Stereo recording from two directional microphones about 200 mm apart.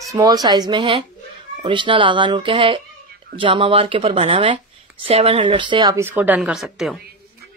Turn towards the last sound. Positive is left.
turn(degrees=0)  # may be behind; listen again after turning